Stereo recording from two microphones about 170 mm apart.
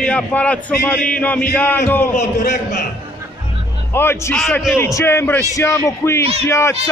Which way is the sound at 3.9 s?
15° left (ahead or behind).